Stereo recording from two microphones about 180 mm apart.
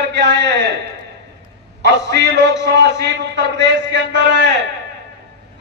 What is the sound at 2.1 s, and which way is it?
A man's voice, 75° right (ahead or behind).